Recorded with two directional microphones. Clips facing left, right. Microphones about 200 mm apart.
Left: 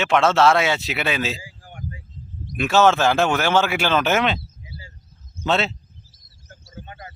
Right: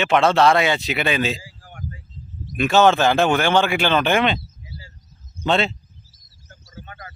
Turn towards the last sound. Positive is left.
turn(degrees=25)  # may be behind; listen again after turning